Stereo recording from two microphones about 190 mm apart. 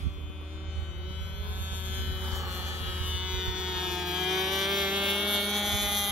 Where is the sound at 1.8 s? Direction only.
15° right (ahead or behind).